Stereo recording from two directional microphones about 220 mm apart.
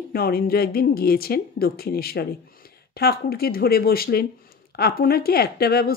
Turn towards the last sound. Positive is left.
turn(degrees=45)  # may be behind; listen again after turning